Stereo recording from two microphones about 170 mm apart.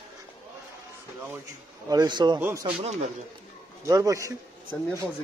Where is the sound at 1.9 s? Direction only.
25° right (ahead or behind).